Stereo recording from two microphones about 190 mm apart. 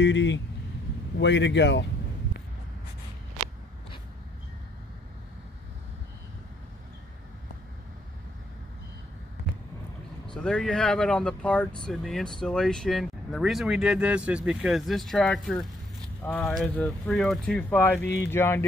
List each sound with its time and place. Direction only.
0.0 s speech: 75° left (ahead or behind)
10.3 s speech: 5° left (ahead or behind)